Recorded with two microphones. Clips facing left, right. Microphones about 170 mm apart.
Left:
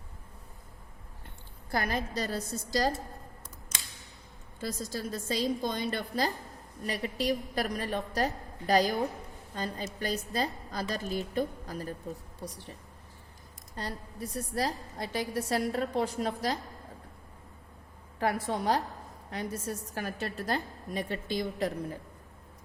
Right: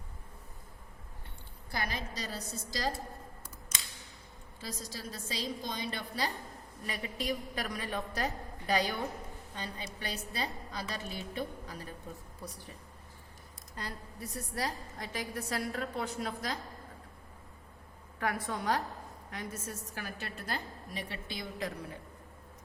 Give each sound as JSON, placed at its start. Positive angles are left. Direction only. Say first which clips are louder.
{"t": 1.7, "sound": "a woman's voice", "louder": "left 7 dB", "side_deg": 50}
{"t": 4.6, "sound": "a woman's voice", "louder": "left 7 dB", "side_deg": 45}
{"t": 14.5, "sound": "a woman's voice", "louder": "left 4 dB", "side_deg": 35}
{"t": 18.2, "sound": "a woman's voice", "louder": "left 5 dB", "side_deg": 30}